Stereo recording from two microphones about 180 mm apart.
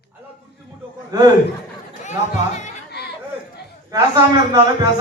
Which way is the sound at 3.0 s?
65° left (ahead or behind).